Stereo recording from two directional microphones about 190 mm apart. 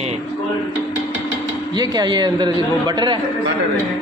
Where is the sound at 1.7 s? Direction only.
20° right (ahead or behind).